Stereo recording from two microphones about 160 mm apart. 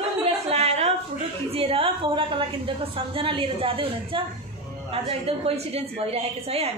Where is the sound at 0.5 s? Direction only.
40° right (ahead or behind).